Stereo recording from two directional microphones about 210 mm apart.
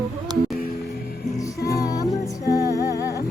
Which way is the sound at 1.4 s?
15° left (ahead or behind).